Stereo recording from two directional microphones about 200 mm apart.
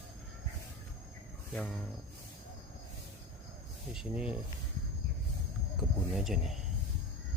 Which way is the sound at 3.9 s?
5° right (ahead or behind).